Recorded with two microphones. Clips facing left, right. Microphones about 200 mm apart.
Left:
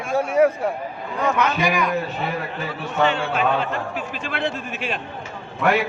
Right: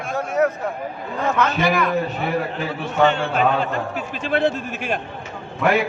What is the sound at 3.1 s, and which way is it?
A man's voice, 45° right (ahead or behind).